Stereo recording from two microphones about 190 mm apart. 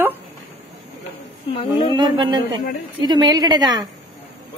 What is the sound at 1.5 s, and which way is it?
Speech, 30° left (ahead or behind).